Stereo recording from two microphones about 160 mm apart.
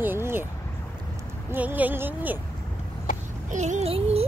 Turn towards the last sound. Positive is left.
turn(degrees=-40)  # may be behind; listen again after turning